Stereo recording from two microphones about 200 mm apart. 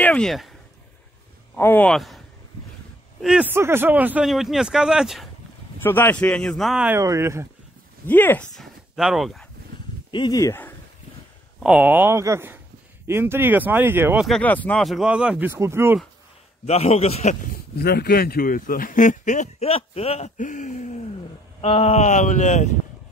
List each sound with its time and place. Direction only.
0.0 s speech: 5° left (ahead or behind)
1.5 s speech: 10° left (ahead or behind)
5.8 s speech: 10° left (ahead or behind); by 7.4 s 15° right (ahead or behind)
8.1 s speech: 10° left (ahead or behind)
10.1 s speech: 20° left (ahead or behind)
11.6 s speech: 5° right (ahead or behind)
14.2 s speech: 5° left (ahead or behind); by 16.0 s 10° right (ahead or behind)
16.6 s a man's voice: 30° left (ahead or behind)
17.7 s a man's voice: 50° left (ahead or behind); by 22.7 s 35° left (ahead or behind)